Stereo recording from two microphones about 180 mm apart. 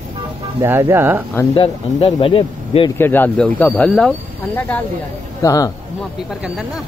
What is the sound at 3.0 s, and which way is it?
Speech, 10° left (ahead or behind).